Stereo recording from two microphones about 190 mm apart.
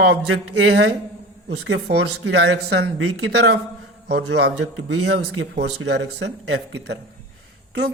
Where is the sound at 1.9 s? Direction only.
60° right (ahead or behind).